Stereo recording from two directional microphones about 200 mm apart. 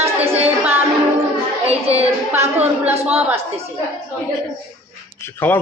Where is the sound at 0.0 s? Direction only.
30° right (ahead or behind).